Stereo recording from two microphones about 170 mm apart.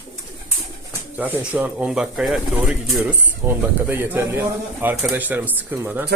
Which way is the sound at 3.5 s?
15° right (ahead or behind).